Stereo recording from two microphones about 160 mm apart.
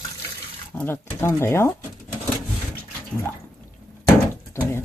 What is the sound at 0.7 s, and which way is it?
Speech, 15° left (ahead or behind).